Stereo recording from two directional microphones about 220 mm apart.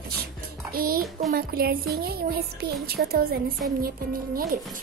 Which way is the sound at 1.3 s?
45° right (ahead or behind).